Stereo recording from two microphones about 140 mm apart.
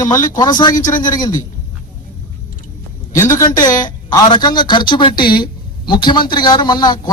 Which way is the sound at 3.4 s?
25° left (ahead or behind).